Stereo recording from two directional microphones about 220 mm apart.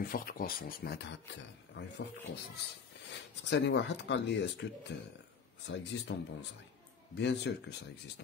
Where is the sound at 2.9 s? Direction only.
55° left (ahead or behind).